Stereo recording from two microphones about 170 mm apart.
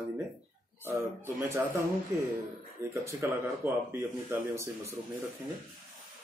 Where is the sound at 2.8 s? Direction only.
15° right (ahead or behind).